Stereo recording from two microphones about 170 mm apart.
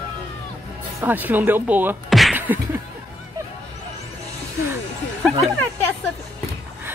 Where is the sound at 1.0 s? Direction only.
10° right (ahead or behind).